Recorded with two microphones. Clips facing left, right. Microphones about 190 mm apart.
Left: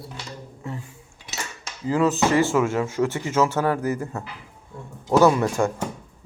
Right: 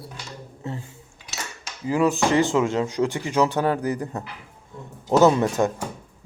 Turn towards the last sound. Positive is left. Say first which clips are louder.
# right 1 dB
turn(degrees=-20)  # may be behind; listen again after turning